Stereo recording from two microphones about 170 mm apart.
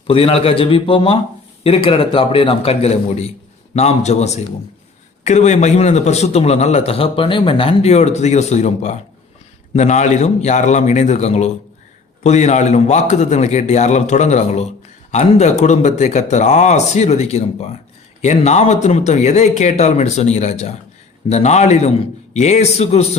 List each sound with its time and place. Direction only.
0.1 s a man's voice: 35° left (ahead or behind)